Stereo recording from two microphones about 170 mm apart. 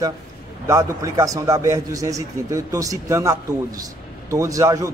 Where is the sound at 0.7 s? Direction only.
15° right (ahead or behind).